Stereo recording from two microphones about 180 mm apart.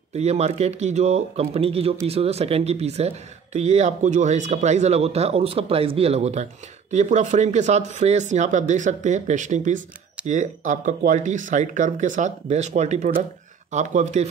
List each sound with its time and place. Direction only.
0.1 s speech: 35° right (ahead or behind)